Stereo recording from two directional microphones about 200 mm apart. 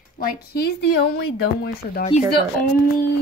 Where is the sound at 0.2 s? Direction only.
50° left (ahead or behind).